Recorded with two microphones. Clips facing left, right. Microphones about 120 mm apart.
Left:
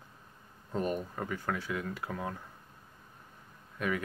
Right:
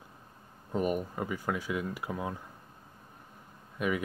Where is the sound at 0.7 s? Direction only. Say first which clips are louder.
Right 3 dB; 15° right (ahead or behind).